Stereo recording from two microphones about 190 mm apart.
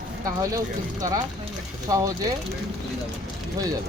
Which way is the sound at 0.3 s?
20° right (ahead or behind).